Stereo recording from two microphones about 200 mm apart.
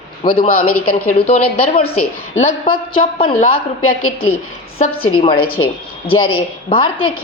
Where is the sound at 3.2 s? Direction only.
30° left (ahead or behind).